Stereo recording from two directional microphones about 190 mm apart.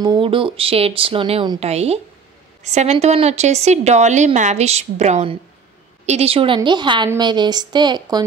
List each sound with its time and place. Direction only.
0.0 s a woman's voice: 25° right (ahead or behind)